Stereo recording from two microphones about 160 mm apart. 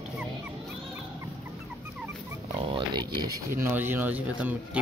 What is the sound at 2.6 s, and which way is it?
Speech, 30° right (ahead or behind).